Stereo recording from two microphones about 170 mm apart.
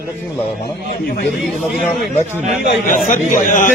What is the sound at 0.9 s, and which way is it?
Speech, 65° left (ahead or behind).